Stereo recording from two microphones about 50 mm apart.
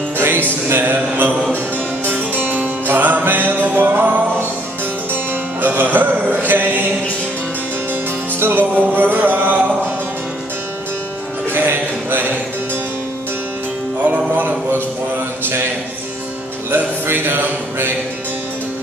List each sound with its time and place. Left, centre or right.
0.7 s mantra: right
2.1 s music: right
7.9 s music: right
11.5 s a sound: right
14.0 s music: right
16.7 s music: right